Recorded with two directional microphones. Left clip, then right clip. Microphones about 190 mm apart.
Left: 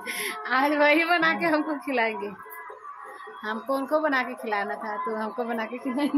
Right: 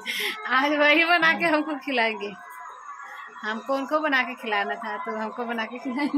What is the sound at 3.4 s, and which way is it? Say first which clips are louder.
A woman's voice: right 1 dB; 10° right (ahead or behind).